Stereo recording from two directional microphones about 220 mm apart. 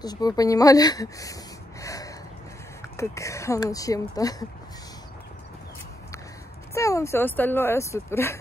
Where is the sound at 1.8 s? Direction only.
15° left (ahead or behind).